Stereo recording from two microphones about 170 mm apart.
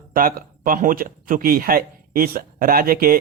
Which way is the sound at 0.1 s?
55° right (ahead or behind).